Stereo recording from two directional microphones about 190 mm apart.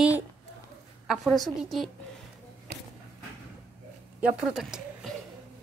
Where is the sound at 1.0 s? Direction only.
Centre (ahead or behind).